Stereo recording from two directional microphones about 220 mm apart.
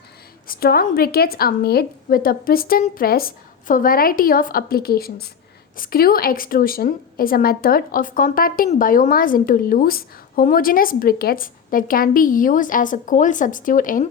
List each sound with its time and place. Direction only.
0.4 s a woman's voice: 45° left (ahead or behind)